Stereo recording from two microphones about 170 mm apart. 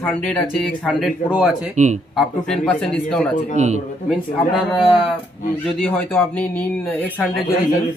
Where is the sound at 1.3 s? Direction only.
5° right (ahead or behind).